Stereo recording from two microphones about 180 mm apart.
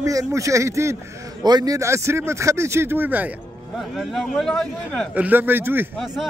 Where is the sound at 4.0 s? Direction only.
Centre (ahead or behind).